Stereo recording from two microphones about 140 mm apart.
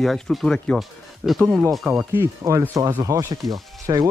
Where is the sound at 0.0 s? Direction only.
5° left (ahead or behind).